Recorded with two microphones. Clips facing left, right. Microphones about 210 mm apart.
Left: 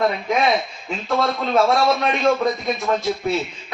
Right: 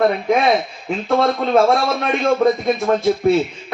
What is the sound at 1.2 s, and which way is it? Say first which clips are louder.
Speech: right 3 dB; 55° right (ahead or behind).